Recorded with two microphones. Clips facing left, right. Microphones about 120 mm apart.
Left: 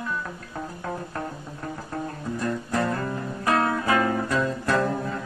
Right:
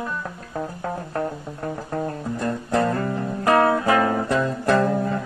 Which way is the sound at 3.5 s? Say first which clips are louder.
Right 5 dB; 30° right (ahead or behind).